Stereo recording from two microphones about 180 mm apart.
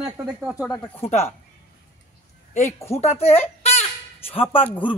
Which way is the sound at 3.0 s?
35° left (ahead or behind).